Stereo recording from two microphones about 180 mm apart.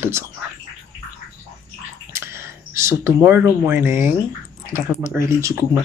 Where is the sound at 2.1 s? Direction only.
15° right (ahead or behind).